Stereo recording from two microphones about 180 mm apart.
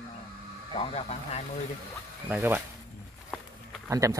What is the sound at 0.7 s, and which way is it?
Speech, 35° left (ahead or behind).